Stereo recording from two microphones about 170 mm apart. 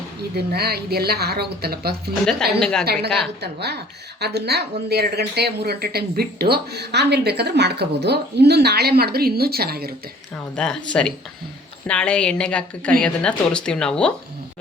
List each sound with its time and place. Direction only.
0.3 s speech: 70° right (ahead or behind)
2.6 s speech: 5° left (ahead or behind)
3.4 s speech: 75° right (ahead or behind)
10.5 s a woman's voice: 5° left (ahead or behind)